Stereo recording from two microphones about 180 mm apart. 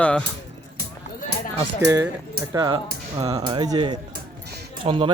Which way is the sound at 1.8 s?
15° right (ahead or behind).